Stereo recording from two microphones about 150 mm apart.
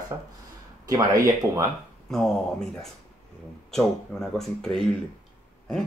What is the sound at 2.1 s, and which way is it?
A man's voice, 5° left (ahead or behind).